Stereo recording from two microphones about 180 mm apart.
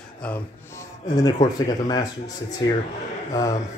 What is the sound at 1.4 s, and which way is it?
Speech, 20° left (ahead or behind).